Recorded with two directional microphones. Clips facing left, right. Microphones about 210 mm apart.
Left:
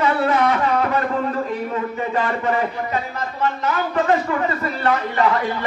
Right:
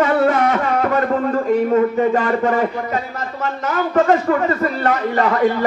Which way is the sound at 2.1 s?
45° right (ahead or behind).